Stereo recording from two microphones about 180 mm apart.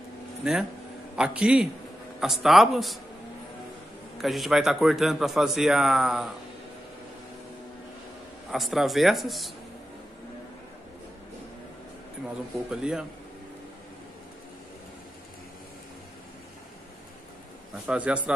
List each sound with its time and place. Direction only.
0.4 s a man's voice: 5° right (ahead or behind)
4.2 s a man's voice: centre (ahead or behind)
8.5 s a man's voice: centre (ahead or behind)
12.6 s a man's voice: 5° right (ahead or behind)
17.8 s a man's voice: 5° right (ahead or behind)